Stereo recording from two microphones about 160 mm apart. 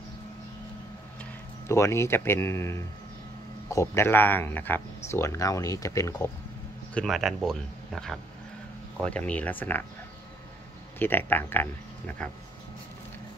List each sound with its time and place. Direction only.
1.7 s speech: 15° left (ahead or behind)
6.9 s speech: 5° left (ahead or behind)
11.0 s speech: 10° left (ahead or behind)